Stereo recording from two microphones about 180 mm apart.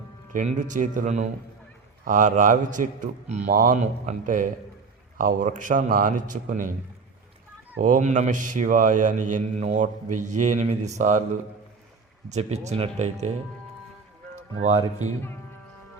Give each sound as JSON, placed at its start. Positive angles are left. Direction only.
{"t": 0.3, "sound": "speech", "side_deg": -45}
{"t": 7.8, "sound": "speech", "side_deg": -45}
{"t": 12.3, "sound": "speech", "side_deg": -35}
{"t": 14.6, "sound": "speech", "side_deg": -40}